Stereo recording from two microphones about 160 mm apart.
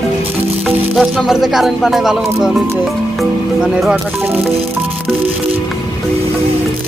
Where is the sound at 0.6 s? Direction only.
Centre (ahead or behind).